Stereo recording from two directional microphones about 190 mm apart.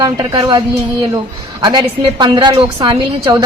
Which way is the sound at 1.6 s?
25° right (ahead or behind).